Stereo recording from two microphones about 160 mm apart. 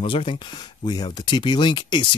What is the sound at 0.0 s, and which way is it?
Speech, 35° left (ahead or behind).